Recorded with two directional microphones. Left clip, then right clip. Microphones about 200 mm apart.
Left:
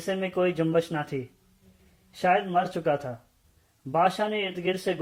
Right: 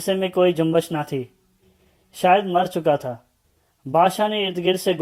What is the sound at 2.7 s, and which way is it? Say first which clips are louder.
Speech: right 7 dB; 35° right (ahead or behind).